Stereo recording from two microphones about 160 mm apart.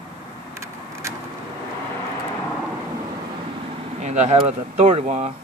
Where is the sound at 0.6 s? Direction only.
20° right (ahead or behind).